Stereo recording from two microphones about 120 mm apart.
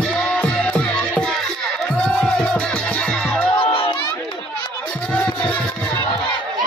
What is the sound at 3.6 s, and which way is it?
Music, 45° left (ahead or behind).